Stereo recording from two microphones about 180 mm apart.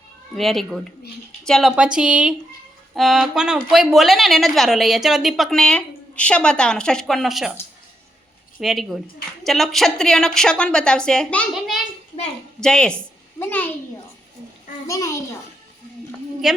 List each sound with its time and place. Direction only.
0.3 s a woman's voice: centre (ahead or behind)
8.6 s a woman's voice: centre (ahead or behind)
14.8 s a child's voice: 15° left (ahead or behind)
16.4 s a woman's voice: centre (ahead or behind)